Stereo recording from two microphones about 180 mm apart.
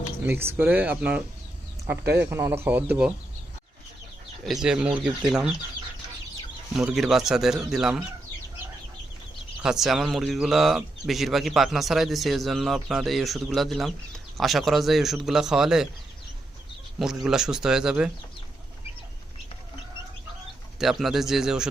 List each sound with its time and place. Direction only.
0.3 s speech: 10° right (ahead or behind)
4.4 s speech: 5° right (ahead or behind)
6.7 s speech: centre (ahead or behind)
9.6 s speech: centre (ahead or behind)
17.0 s speech: centre (ahead or behind)
20.7 s speech: centre (ahead or behind)